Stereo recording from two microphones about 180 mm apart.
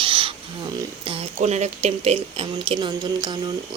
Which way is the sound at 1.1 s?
40° right (ahead or behind).